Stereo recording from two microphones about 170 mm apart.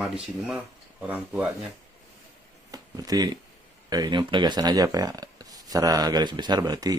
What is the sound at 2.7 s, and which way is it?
Speech, 20° right (ahead or behind).